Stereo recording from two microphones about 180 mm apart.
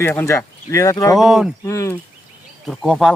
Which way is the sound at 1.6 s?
15° left (ahead or behind).